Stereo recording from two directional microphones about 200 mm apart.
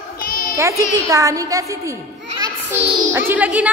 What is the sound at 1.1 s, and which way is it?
Speech, 15° right (ahead or behind).